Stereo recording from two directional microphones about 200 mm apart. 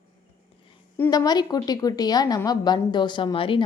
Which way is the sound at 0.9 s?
15° left (ahead or behind).